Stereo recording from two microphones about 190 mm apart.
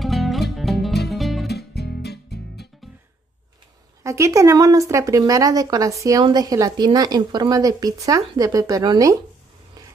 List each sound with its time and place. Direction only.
0.0 s music: centre (ahead or behind)
1.5 s music: 60° left (ahead or behind)
4.0 s speech: 15° right (ahead or behind)